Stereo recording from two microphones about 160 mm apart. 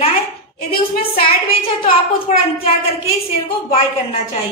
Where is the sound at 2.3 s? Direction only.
45° left (ahead or behind).